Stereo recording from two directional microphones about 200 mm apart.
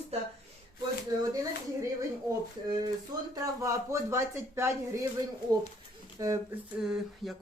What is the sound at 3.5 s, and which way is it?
Speech, 15° right (ahead or behind).